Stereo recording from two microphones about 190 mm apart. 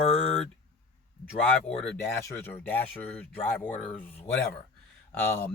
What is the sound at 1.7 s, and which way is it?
Speech, 5° left (ahead or behind).